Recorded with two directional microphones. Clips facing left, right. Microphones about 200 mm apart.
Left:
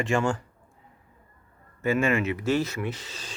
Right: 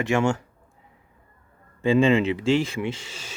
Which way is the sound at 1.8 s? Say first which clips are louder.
Right 5 dB; 30° right (ahead or behind).